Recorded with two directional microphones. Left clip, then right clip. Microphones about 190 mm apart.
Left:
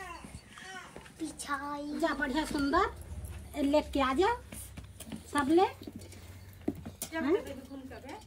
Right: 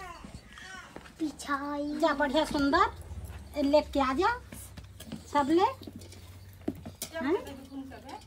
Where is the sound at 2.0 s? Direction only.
15° right (ahead or behind).